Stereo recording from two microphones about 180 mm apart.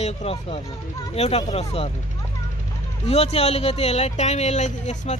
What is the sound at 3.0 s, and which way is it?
Speech, 35° left (ahead or behind).